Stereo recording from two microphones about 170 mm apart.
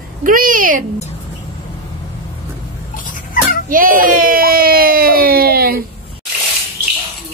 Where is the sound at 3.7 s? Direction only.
55° right (ahead or behind).